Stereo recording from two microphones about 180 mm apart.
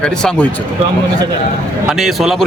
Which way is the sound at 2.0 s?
Centre (ahead or behind).